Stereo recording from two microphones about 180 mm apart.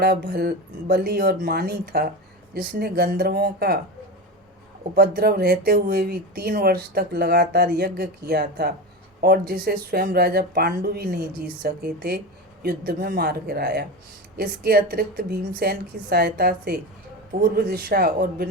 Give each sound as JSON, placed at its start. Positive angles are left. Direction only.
{"t": 0.0, "sound": "speech", "side_deg": -60}
{"t": 4.9, "sound": "speech", "side_deg": -60}